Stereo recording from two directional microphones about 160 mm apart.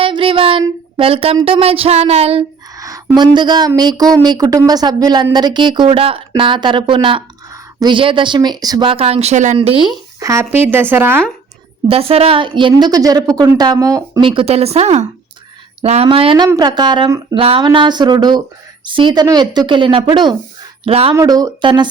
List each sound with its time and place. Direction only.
0.0 s child singing: 35° right (ahead or behind)
0.9 s speech: 35° right (ahead or behind)
2.7 s a sound: 20° right (ahead or behind)
3.8 s a woman's voice: 25° right (ahead or behind); by 9.6 s 50° right (ahead or behind)
9.6 s speech: 30° right (ahead or behind); by 11.2 s 15° right (ahead or behind)
11.9 s a woman's voice: 35° right (ahead or behind); by 14.3 s 20° right (ahead or behind)
14.3 s a woman's voice: 35° right (ahead or behind)
21.2 s a woman's voice: 25° right (ahead or behind)